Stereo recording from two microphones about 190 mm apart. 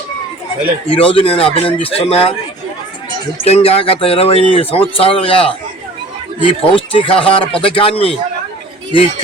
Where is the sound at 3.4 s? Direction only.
30° left (ahead or behind).